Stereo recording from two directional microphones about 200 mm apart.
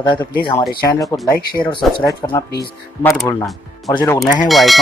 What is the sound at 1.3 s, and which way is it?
Speech, 50° left (ahead or behind).